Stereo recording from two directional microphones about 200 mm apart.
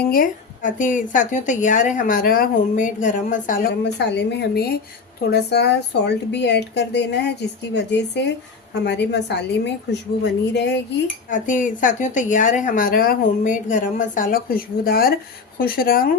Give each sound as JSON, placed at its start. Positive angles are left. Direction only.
{"t": 0.0, "sound": "a woman's voice", "side_deg": 45}
{"t": 11.3, "sound": "a woman's voice", "side_deg": 40}